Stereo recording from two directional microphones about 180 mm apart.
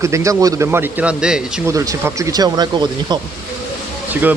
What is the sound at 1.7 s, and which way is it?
Speech, 15° right (ahead or behind).